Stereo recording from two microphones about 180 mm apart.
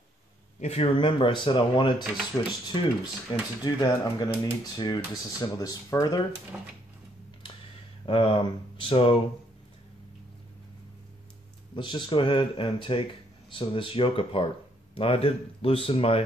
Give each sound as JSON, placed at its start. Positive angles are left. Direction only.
{"t": 0.6, "sound": "speech", "side_deg": 35}
{"t": 6.5, "sound": "speech", "side_deg": -10}
{"t": 8.0, "sound": "speech", "side_deg": 30}
{"t": 11.7, "sound": "speech", "side_deg": 25}